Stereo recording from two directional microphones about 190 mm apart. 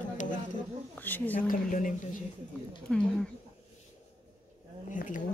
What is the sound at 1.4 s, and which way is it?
Speech, 45° left (ahead or behind).